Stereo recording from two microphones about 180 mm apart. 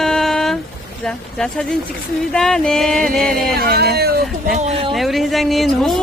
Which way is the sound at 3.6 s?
60° right (ahead or behind).